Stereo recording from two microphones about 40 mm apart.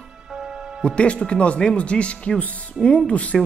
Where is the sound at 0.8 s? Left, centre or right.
Left.